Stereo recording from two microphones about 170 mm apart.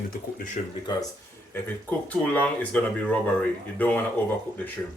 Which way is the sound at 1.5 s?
10° left (ahead or behind).